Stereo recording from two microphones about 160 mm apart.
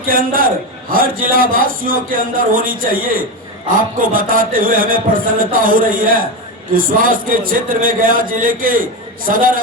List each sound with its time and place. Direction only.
0.0 s a man's voice: 60° right (ahead or behind)